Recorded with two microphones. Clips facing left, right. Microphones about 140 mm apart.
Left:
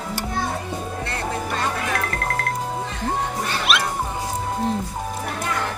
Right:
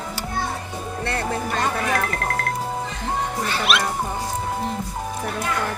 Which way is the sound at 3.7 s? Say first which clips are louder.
Even; centre (ahead or behind).